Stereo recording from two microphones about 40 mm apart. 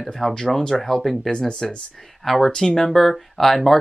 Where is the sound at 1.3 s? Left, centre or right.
Centre.